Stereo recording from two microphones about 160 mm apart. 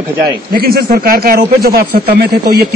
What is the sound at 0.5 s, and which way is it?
A man's voice, 75° right (ahead or behind).